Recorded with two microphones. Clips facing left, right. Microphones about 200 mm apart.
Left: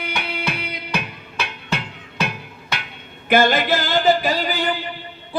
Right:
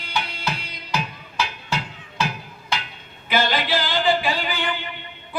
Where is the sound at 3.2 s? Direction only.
50° left (ahead or behind).